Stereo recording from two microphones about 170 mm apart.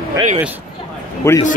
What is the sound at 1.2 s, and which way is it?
Speech, 15° left (ahead or behind).